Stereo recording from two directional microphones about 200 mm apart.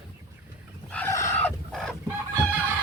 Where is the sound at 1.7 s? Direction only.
Centre (ahead or behind).